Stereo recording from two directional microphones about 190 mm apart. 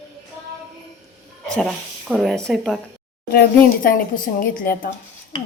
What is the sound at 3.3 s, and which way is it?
A woman's voice, 50° left (ahead or behind).